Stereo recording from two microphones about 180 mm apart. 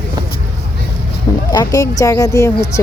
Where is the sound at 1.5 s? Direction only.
20° left (ahead or behind).